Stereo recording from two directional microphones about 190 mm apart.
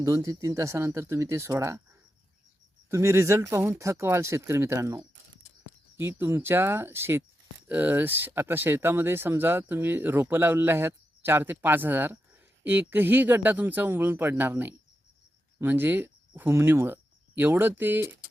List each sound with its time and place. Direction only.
0.0 s speech: 20° right (ahead or behind)
2.9 s speech: 15° right (ahead or behind)